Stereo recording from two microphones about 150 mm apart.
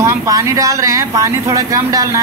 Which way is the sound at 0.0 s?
20° right (ahead or behind).